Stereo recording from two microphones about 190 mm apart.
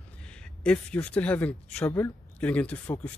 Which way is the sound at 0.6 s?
5° left (ahead or behind).